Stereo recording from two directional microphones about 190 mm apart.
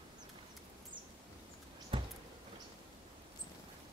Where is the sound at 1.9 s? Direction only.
30° right (ahead or behind).